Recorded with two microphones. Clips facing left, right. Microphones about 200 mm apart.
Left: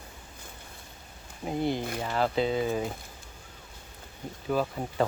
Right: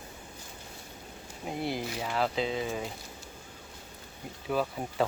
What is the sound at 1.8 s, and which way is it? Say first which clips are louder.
Speech: left 2 dB; 55° left (ahead or behind).